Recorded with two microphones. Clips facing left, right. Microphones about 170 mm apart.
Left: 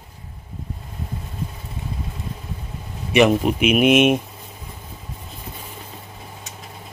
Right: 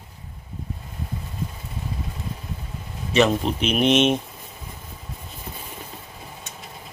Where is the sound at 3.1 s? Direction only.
10° left (ahead or behind).